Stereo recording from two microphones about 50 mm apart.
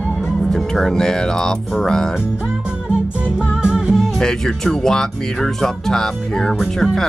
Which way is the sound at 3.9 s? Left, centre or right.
Centre.